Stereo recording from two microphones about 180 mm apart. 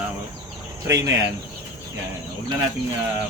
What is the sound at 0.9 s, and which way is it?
Speech, 20° right (ahead or behind).